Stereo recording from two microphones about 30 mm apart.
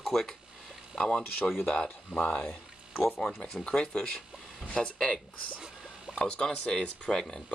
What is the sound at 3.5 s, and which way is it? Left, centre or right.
Speech, centre.